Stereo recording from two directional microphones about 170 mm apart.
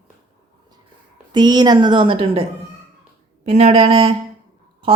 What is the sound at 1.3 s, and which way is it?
A woman's voice, 25° right (ahead or behind).